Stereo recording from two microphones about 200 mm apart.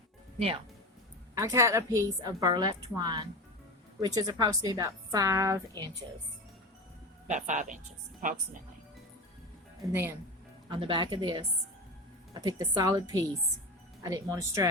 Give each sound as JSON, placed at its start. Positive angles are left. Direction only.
{"t": 0.3, "sound": "speech", "side_deg": -30}
{"t": 1.4, "sound": "a woman's voice", "side_deg": -15}
{"t": 7.3, "sound": "speech", "side_deg": -35}
{"t": 9.9, "sound": "a woman's voice", "side_deg": -10}
{"t": 10.7, "sound": "a woman's voice", "side_deg": -25}